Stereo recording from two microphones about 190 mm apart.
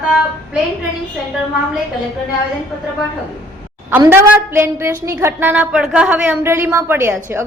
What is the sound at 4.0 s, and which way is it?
A woman's voice, 10° right (ahead or behind).